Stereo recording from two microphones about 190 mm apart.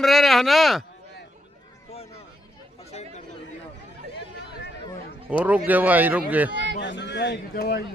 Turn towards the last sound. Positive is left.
turn(degrees=55)  # may be behind; listen again after turning